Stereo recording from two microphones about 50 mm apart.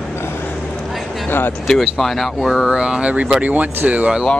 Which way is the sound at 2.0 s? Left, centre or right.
Centre.